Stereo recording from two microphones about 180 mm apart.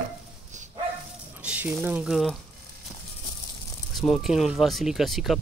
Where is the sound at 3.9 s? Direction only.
Centre (ahead or behind).